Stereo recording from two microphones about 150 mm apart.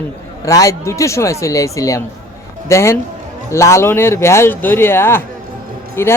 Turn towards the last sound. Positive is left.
turn(degrees=20)  # may be behind; listen again after turning